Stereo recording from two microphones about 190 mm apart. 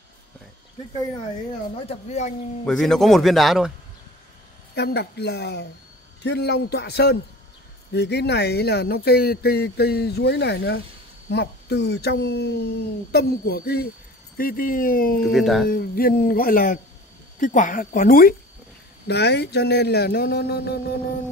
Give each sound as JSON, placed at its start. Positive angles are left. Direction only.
{"t": 1.8, "sound": "speech", "side_deg": 35}
{"t": 2.6, "sound": "speech", "side_deg": 0}
{"t": 4.7, "sound": "speech", "side_deg": 60}
{"t": 15.3, "sound": "speech", "side_deg": 0}
{"t": 15.7, "sound": "speech", "side_deg": 50}
{"t": 19.0, "sound": "speech", "side_deg": 60}